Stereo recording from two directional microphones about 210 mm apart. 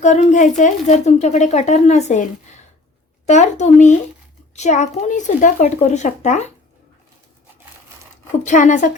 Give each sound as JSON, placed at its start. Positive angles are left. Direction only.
{"t": 0.0, "sound": "speech", "side_deg": 35}
{"t": 8.4, "sound": "speech", "side_deg": 35}